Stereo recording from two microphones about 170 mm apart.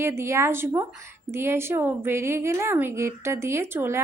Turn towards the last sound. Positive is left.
turn(degrees=-15)  # may be behind; listen again after turning